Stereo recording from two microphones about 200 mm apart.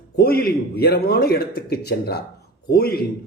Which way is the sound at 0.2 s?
50° left (ahead or behind).